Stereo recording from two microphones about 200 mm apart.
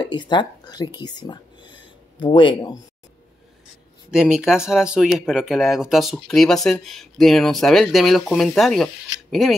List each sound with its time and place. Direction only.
0.0 s speech: 20° left (ahead or behind)
4.1 s speech: 5° right (ahead or behind)